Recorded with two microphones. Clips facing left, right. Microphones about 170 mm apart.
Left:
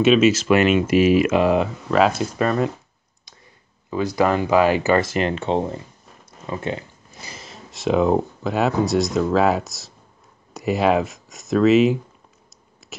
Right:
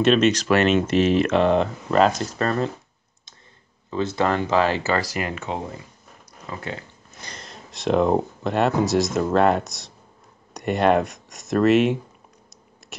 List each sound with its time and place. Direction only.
0.0 s speech: 5° left (ahead or behind)
4.1 s speech: 15° left (ahead or behind)
7.2 s speech: 5° left (ahead or behind)